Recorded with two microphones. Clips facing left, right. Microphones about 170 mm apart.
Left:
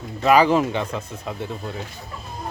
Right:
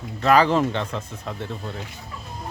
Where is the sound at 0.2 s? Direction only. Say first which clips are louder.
Left 2 dB; 10° left (ahead or behind).